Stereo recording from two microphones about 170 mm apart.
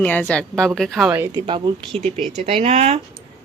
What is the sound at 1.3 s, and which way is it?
Speech, 30° right (ahead or behind).